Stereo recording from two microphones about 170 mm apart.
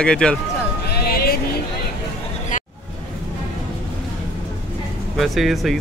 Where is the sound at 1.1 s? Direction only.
65° left (ahead or behind).